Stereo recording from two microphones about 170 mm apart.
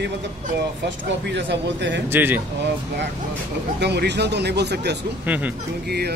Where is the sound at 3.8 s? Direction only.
80° right.